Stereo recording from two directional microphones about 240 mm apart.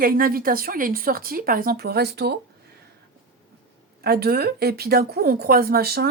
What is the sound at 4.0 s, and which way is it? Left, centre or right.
Speech, right.